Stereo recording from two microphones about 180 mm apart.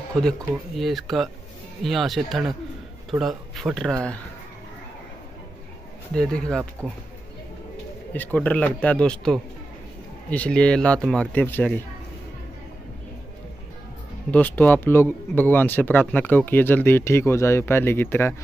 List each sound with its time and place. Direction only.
0.2 s speech: centre (ahead or behind)
6.1 s speech: 5° left (ahead or behind)
8.1 s speech: 10° left (ahead or behind)
14.3 s speech: 10° left (ahead or behind)